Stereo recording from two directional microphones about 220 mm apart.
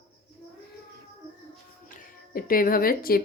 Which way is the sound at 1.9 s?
40° left (ahead or behind).